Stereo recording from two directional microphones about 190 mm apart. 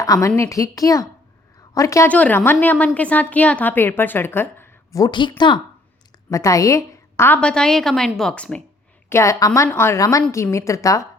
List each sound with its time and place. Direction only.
0.0 s a woman's voice: 15° left (ahead or behind)
6.3 s a woman's voice: 15° left (ahead or behind)
9.0 s a woman's voice: 15° left (ahead or behind)